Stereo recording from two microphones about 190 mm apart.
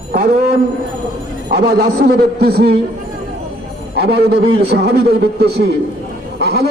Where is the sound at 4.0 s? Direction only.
60° right (ahead or behind).